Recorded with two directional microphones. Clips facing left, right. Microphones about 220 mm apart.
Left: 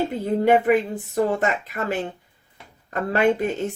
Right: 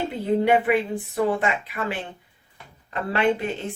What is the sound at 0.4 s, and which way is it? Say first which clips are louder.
Speech: left 5 dB; 45° left (ahead or behind).